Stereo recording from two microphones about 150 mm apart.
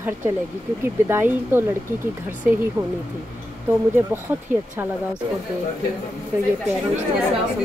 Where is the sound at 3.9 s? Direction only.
15° right (ahead or behind).